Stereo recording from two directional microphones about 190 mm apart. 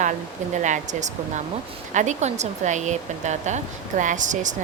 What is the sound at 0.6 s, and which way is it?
Speech, 40° right (ahead or behind).